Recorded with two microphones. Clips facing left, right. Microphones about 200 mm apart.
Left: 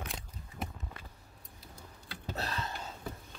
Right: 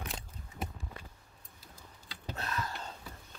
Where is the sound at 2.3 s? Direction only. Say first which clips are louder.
Even; 30° left (ahead or behind).